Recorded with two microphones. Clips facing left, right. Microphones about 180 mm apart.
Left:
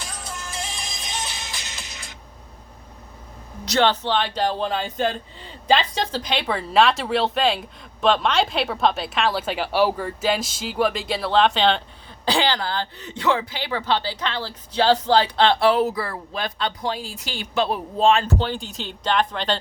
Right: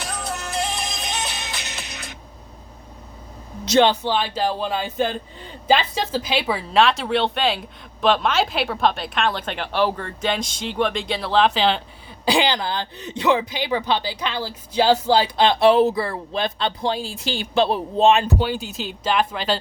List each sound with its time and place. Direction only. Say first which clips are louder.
0.0 s music: right 6 dB; 65° right (ahead or behind)
3.7 s speech: right 3 dB; 15° right (ahead or behind)
12.2 s speech: right 2 dB; 15° right (ahead or behind)